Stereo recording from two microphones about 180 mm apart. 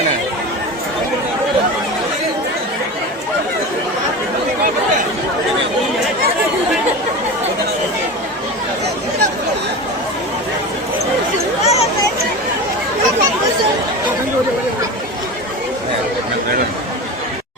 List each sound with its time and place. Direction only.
11.6 s chatter: 35° left (ahead or behind)